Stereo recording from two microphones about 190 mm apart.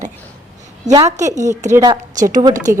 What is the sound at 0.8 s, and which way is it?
A woman's voice, 20° right (ahead or behind).